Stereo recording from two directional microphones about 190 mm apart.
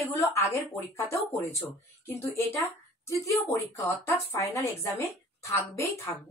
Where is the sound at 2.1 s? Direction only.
15° left (ahead or behind).